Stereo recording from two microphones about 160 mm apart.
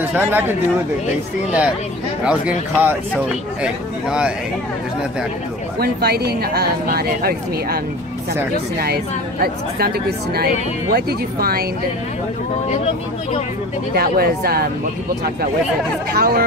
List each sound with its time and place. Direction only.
0.0 s speech: 10° right (ahead or behind)
2.2 s speech: 10° right (ahead or behind)
5.8 s a woman's voice: 75° right (ahead or behind)
13.9 s a woman's voice: 75° right (ahead or behind)
16.1 s a woman's voice: 70° right (ahead or behind)